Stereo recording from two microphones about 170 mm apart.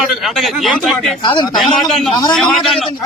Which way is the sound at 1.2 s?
25° left (ahead or behind).